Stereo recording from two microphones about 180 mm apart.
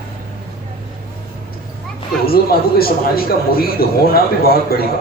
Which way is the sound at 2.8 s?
55° left (ahead or behind).